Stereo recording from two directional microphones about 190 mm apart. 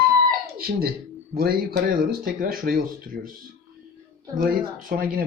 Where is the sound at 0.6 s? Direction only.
55° right (ahead or behind).